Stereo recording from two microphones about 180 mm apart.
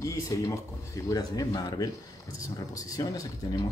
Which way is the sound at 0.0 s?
15° left (ahead or behind).